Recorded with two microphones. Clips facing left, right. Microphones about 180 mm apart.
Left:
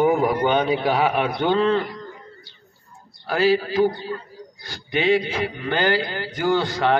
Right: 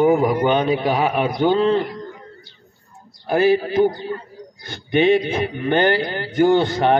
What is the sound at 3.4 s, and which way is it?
A man's voice, 20° right (ahead or behind).